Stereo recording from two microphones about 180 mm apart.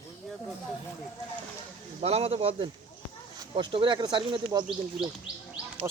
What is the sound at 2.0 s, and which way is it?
Speech, 35° right (ahead or behind).